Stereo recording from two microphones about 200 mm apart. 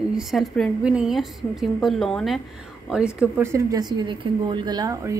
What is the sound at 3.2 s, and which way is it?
Speech, 10° right (ahead or behind).